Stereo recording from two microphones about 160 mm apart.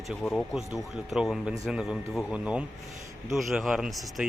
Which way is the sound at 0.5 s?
Centre (ahead or behind).